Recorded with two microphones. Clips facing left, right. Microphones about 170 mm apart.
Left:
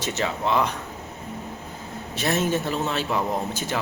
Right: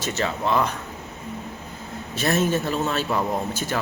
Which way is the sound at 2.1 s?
15° left (ahead or behind).